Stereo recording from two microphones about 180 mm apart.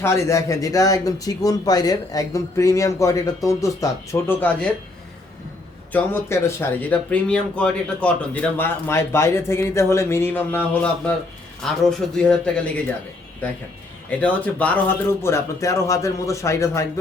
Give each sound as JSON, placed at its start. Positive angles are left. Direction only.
{"t": 0.0, "sound": "speech", "side_deg": 15}
{"t": 5.9, "sound": "speech", "side_deg": 15}
{"t": 14.2, "sound": "speech", "side_deg": 10}